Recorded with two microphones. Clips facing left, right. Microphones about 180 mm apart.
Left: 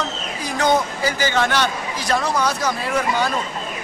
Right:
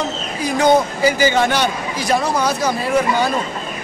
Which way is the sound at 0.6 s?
10° right (ahead or behind).